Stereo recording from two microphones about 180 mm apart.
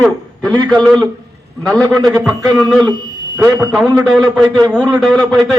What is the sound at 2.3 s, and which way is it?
Speech, 20° right (ahead or behind).